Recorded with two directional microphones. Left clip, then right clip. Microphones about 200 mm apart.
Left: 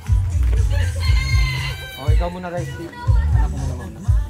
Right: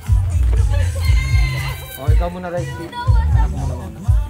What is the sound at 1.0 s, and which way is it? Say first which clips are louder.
Music: left 2 dB; 40° left (ahead or behind).